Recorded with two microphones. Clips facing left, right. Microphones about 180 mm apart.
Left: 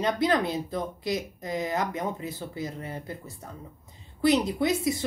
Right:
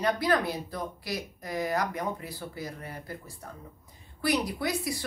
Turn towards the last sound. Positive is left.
turn(degrees=20)  # may be behind; listen again after turning